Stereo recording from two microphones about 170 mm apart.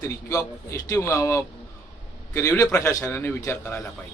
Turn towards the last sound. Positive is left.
turn(degrees=10)  # may be behind; listen again after turning